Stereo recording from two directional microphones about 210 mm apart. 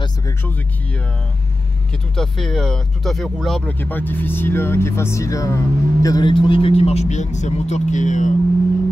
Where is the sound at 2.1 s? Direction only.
Centre (ahead or behind); by 8.3 s 35° left (ahead or behind).